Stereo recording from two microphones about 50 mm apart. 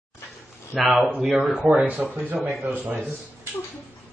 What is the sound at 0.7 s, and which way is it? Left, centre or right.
Speech, centre.